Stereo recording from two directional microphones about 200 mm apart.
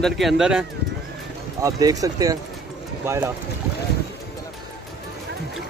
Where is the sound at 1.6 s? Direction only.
15° right (ahead or behind).